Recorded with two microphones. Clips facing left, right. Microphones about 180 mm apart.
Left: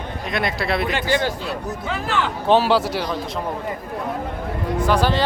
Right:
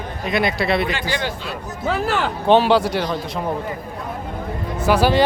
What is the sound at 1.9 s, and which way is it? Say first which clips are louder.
Speech: right 4 dB; 45° right (ahead or behind).